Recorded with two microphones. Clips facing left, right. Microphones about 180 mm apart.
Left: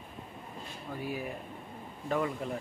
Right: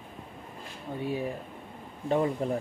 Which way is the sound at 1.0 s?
25° right (ahead or behind).